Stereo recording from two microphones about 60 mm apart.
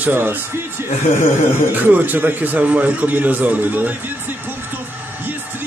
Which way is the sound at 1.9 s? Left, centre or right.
Right.